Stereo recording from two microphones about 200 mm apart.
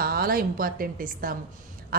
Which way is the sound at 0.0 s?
50° right (ahead or behind).